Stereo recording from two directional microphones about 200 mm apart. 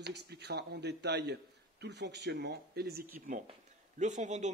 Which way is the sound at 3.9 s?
35° right (ahead or behind).